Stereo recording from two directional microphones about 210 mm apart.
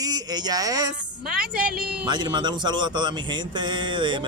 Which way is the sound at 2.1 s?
20° right (ahead or behind).